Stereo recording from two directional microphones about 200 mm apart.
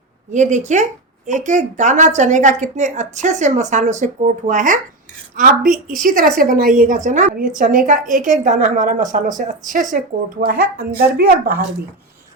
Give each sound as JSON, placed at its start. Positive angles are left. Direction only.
{"t": 0.3, "sound": "a woman's voice", "side_deg": -35}